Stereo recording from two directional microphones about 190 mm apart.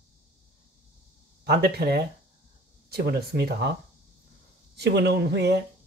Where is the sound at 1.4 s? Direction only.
60° right (ahead or behind).